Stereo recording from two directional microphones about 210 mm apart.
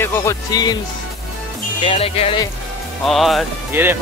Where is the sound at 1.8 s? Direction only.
25° left (ahead or behind).